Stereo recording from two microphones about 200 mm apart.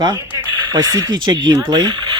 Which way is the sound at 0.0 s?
15° right (ahead or behind).